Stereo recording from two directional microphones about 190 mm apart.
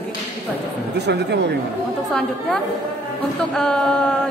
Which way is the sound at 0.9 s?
65° right (ahead or behind).